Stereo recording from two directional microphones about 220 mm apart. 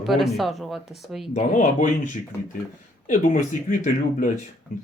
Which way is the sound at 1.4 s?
35° left (ahead or behind).